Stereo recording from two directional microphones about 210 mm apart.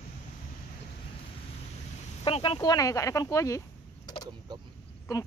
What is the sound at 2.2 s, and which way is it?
Speech, 25° left (ahead or behind).